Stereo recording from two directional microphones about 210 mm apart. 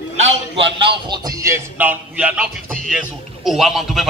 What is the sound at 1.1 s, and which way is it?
A man's voice, 15° right (ahead or behind).